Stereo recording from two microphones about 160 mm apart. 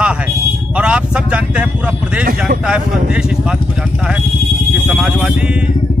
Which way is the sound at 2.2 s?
60° right (ahead or behind).